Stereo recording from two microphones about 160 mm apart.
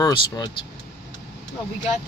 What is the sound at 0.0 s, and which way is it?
Speech, 25° left (ahead or behind).